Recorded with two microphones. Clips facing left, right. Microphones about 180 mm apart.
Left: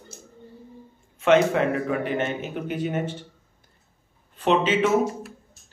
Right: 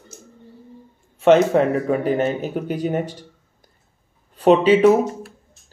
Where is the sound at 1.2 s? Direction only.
35° right (ahead or behind).